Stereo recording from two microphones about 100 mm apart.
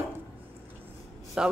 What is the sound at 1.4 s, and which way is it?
Speech, 5° right (ahead or behind).